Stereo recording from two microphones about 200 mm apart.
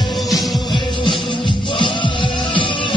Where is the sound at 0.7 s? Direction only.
25° left (ahead or behind).